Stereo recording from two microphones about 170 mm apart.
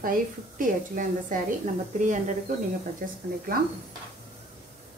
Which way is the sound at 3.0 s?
60° right (ahead or behind).